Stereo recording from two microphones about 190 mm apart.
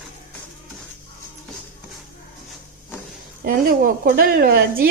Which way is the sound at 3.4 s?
50° right (ahead or behind).